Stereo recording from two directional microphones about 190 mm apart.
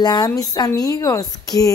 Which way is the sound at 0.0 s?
20° left (ahead or behind).